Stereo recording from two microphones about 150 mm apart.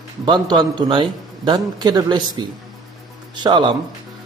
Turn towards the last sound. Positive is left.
turn(degrees=-30)  # may be behind; listen again after turning